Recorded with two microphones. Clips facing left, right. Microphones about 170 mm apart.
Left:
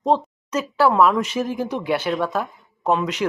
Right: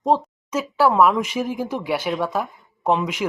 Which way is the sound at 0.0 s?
10° right (ahead or behind).